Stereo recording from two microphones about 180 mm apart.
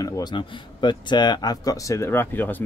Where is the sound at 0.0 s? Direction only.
20° left (ahead or behind).